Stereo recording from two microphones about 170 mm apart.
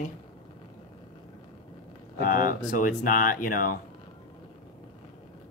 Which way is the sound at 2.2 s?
55° left (ahead or behind).